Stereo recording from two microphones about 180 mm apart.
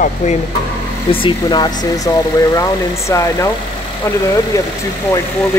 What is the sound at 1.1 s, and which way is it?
Speech, 25° left (ahead or behind).